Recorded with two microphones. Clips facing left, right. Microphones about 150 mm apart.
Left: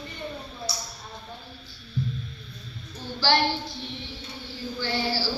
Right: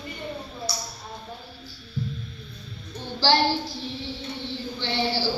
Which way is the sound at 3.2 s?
30° right (ahead or behind).